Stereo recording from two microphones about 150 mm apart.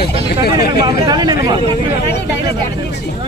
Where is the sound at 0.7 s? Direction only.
25° right (ahead or behind).